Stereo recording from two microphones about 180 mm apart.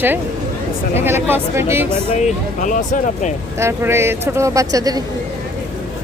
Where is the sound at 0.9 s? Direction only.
10° right (ahead or behind).